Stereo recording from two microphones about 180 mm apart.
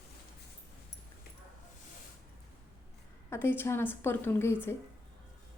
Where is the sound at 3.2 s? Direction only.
10° left (ahead or behind).